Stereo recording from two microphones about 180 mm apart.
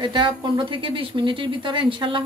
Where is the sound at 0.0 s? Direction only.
25° right (ahead or behind).